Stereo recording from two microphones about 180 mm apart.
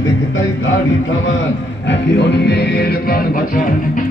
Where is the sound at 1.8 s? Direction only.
70° left (ahead or behind).